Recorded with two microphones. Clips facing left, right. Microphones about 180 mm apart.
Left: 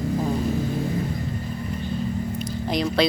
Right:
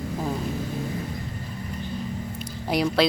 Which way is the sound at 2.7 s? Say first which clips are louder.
Even; 10° right (ahead or behind).